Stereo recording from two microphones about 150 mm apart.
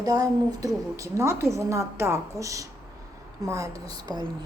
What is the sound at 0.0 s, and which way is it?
A woman's voice, 25° right (ahead or behind).